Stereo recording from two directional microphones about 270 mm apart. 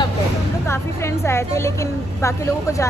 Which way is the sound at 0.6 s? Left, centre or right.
Centre.